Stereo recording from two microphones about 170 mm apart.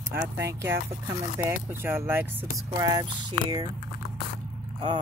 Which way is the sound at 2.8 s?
25° right (ahead or behind).